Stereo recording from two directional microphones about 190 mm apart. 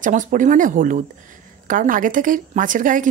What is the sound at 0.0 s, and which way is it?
A woman's voice, 45° right (ahead or behind).